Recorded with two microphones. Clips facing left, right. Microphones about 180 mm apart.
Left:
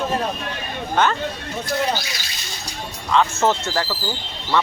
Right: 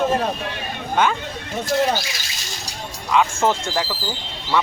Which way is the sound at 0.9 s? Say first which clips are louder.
Even; 10° right (ahead or behind).